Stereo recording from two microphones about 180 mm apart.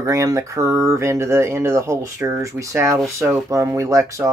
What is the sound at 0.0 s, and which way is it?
Speech, 15° right (ahead or behind).